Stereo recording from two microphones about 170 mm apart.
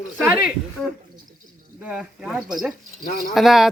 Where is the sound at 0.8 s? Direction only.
5° left (ahead or behind).